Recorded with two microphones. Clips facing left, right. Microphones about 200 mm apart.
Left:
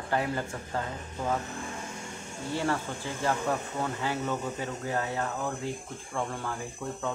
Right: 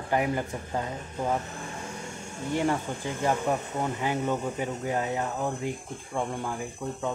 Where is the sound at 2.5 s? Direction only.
15° right (ahead or behind).